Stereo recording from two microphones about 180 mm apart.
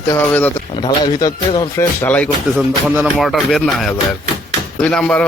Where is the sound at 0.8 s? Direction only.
20° left (ahead or behind).